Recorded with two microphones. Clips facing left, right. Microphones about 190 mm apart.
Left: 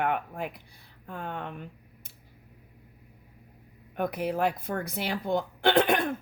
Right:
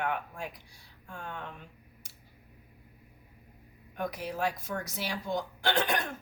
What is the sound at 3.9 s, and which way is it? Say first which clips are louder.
Speech: left 6 dB; 55° left (ahead or behind).